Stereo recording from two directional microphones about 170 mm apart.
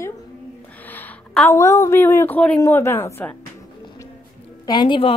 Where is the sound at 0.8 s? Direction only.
10° left (ahead or behind).